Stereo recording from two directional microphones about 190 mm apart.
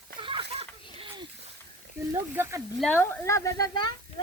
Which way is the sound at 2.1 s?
15° right (ahead or behind).